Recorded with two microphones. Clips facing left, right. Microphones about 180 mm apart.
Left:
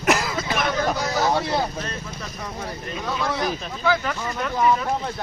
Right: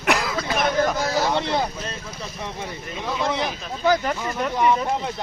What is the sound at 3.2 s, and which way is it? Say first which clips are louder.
Speech: right 2 dB; 20° right (ahead or behind).